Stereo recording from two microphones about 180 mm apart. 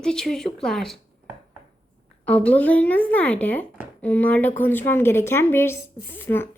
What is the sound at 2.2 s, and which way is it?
A woman's voice, 5° left (ahead or behind).